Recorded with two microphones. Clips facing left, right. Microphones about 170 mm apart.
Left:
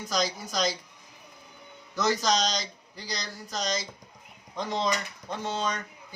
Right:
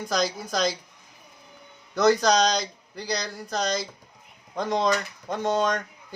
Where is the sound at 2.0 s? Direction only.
60° right (ahead or behind).